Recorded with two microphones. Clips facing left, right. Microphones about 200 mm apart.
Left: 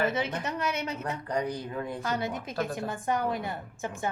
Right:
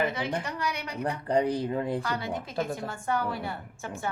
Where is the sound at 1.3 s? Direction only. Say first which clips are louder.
Right 7 dB; 25° right (ahead or behind).